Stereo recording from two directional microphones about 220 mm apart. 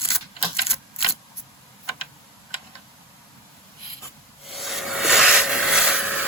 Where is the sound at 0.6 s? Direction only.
25° left (ahead or behind).